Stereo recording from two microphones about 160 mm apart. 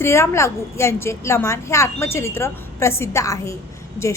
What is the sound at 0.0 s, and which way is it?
A woman's voice, 15° left (ahead or behind).